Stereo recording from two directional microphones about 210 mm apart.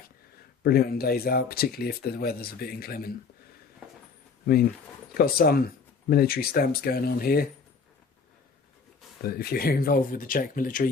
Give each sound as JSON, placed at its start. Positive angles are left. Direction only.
{"t": 0.6, "sound": "speech", "side_deg": 45}
{"t": 5.1, "sound": "speech", "side_deg": 45}
{"t": 9.2, "sound": "speech", "side_deg": 45}